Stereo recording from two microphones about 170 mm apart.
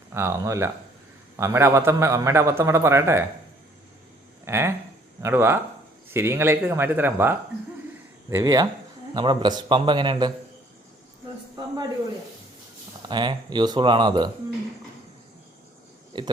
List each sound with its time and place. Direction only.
0.1 s a man's voice: 15° right (ahead or behind)
4.4 s a man's voice: 15° right (ahead or behind)
8.3 s a man's voice: 20° right (ahead or behind)
13.1 s a man's voice: 25° right (ahead or behind)
16.1 s speech: 25° right (ahead or behind)